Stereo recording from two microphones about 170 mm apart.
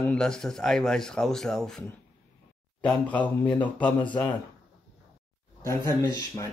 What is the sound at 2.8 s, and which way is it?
Speech, 5° left (ahead or behind).